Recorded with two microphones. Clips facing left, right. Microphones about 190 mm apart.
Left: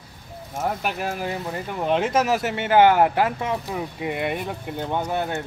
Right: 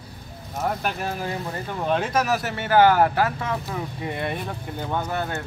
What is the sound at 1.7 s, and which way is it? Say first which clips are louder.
Speech: left 2 dB; 15° left (ahead or behind).